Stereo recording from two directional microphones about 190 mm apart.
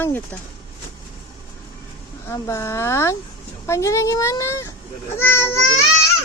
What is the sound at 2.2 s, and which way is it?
Speech, 15° left (ahead or behind).